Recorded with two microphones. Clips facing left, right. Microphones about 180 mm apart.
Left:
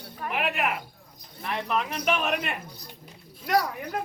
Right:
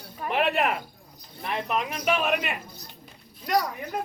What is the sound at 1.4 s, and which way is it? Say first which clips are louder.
Speech: even; 15° right (ahead or behind).